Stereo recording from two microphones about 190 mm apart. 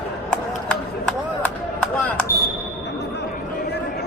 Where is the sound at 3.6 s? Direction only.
60° left (ahead or behind).